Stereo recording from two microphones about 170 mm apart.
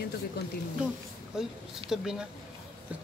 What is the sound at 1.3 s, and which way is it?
Speech, 5° right (ahead or behind).